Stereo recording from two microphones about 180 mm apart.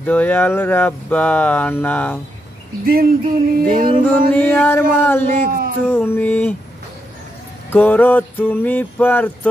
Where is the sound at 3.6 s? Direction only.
55° right (ahead or behind).